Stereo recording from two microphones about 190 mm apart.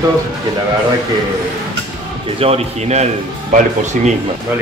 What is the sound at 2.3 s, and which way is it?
Speech, 30° right (ahead or behind).